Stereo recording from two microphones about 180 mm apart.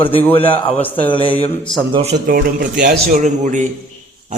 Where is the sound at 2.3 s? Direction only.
55° right (ahead or behind).